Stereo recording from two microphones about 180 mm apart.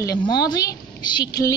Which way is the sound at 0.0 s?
20° left (ahead or behind).